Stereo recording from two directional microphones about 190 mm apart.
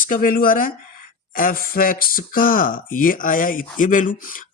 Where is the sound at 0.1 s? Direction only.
50° left (ahead or behind).